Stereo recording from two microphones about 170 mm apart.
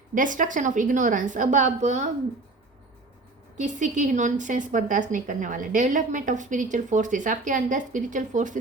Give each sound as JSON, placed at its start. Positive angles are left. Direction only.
{"t": 0.1, "sound": "a woman's voice", "side_deg": -50}
{"t": 3.6, "sound": "a woman's voice", "side_deg": -45}